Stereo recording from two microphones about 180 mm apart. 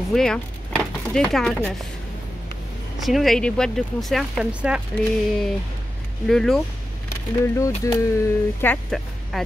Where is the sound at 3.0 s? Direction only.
Centre (ahead or behind).